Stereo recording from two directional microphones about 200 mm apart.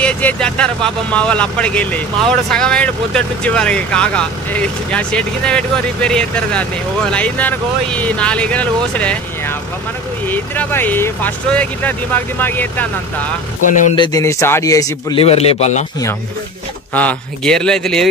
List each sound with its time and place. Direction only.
0.0 s speech: 5° left (ahead or behind)
13.7 s speech: 40° left (ahead or behind)
13.9 s speech: 20° left (ahead or behind)
15.2 s speech: 30° left (ahead or behind)
16.9 s speech: 5° left (ahead or behind)